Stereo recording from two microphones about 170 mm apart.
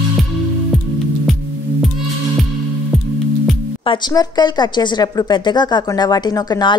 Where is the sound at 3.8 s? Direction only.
25° left (ahead or behind).